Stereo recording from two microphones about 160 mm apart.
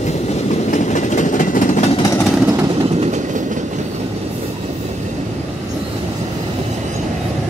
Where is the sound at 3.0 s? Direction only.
50° right (ahead or behind).